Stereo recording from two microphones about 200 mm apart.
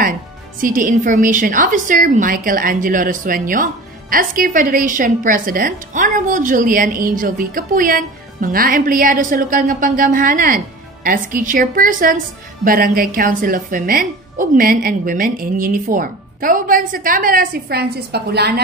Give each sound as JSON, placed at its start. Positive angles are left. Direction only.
{"t": 0.6, "sound": "a woman's voice", "side_deg": -40}